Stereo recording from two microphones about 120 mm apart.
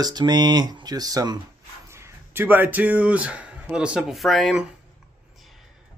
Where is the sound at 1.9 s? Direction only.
20° right (ahead or behind); by 4.6 s centre (ahead or behind).